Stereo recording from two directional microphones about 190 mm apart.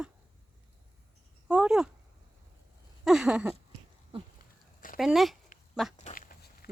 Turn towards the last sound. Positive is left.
turn(degrees=45)  # may be behind; listen again after turning